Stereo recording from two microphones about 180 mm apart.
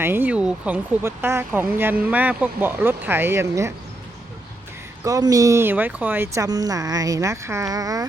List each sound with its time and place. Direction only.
0.0 s speech: 10° right (ahead or behind)
5.0 s speech: 20° right (ahead or behind)